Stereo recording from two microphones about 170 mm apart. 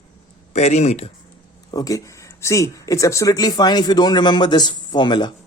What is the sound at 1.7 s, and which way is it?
A man's voice, 20° left (ahead or behind).